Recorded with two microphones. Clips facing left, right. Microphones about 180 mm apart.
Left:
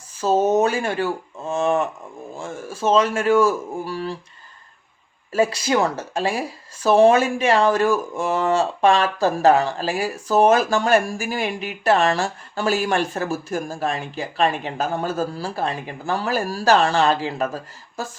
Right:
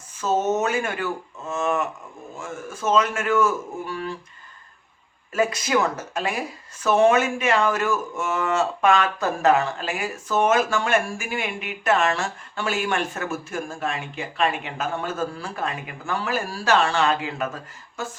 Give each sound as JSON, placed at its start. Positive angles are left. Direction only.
{"t": 0.2, "sound": "speech", "side_deg": 30}
{"t": 5.3, "sound": "speech", "side_deg": 30}